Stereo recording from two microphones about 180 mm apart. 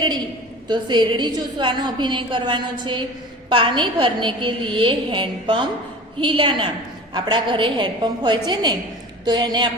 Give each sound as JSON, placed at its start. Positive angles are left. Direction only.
{"t": 0.7, "sound": "a woman's voice", "side_deg": -25}